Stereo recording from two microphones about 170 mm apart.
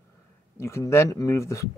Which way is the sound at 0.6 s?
15° left (ahead or behind).